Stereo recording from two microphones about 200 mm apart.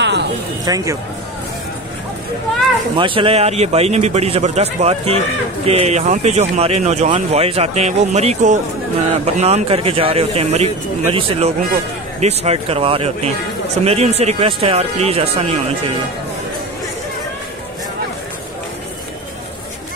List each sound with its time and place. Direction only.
0.0 s a sound: 60° right (ahead or behind)
0.7 s speech: 20° right (ahead or behind)
3.0 s speech: 25° right (ahead or behind)